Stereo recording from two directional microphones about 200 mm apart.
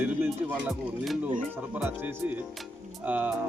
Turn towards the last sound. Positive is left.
turn(degrees=-10)  # may be behind; listen again after turning